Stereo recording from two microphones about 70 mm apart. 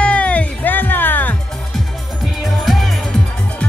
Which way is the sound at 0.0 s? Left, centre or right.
Centre.